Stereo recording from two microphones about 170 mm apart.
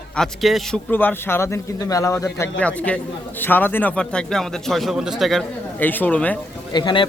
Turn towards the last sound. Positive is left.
turn(degrees=25)  # may be behind; listen again after turning